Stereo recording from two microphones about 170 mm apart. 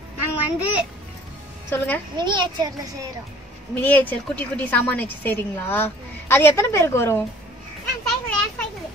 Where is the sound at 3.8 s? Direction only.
10° left (ahead or behind).